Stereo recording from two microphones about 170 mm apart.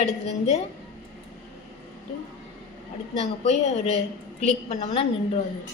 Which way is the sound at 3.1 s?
40° left (ahead or behind).